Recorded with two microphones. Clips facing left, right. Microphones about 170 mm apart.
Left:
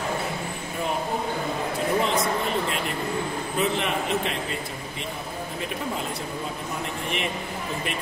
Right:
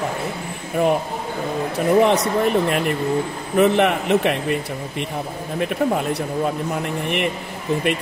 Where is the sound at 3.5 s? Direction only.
65° right (ahead or behind).